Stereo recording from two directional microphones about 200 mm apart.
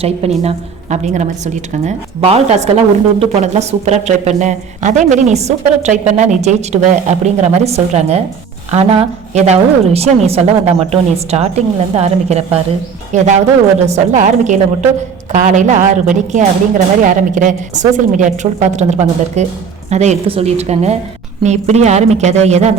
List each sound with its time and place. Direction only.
0.0 s a woman's voice: 30° right (ahead or behind)